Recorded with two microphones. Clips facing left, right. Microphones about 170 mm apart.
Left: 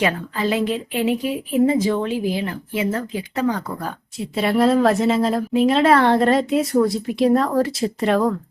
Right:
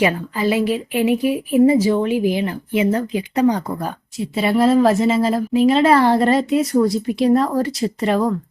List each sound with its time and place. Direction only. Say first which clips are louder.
0.0 s a woman's voice: right 3 dB; 10° right (ahead or behind)
4.2 s speech: right 1 dB; centre (ahead or behind)